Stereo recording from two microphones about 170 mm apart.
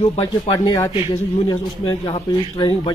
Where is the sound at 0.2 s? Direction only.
20° left (ahead or behind).